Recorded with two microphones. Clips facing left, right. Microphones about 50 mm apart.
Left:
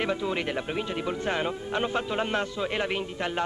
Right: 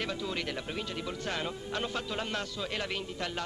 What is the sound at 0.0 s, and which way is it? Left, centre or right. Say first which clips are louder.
Speech: left 7 dB; left.